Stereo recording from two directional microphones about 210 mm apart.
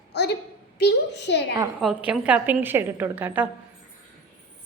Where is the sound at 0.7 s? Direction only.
55° left (ahead or behind).